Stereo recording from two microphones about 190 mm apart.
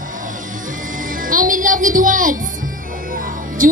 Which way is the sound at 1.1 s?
45° right (ahead or behind).